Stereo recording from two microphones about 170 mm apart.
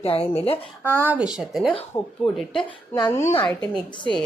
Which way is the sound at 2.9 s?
20° left (ahead or behind).